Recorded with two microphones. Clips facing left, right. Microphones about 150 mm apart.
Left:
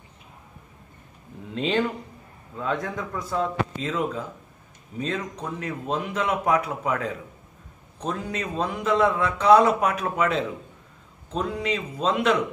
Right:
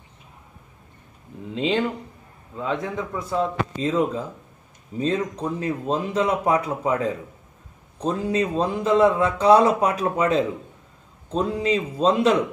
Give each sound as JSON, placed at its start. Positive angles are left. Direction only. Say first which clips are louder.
{"t": 1.5, "sound": "a sound", "louder": "right 2 dB", "side_deg": -15}
{"t": 2.7, "sound": "a man's voice", "louder": "right 2 dB", "side_deg": -5}
{"t": 3.3, "sound": "a man's voice", "louder": "right 2 dB", "side_deg": -30}